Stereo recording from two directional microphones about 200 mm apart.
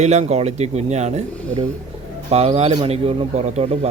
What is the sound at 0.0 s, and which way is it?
Speech, 35° right (ahead or behind).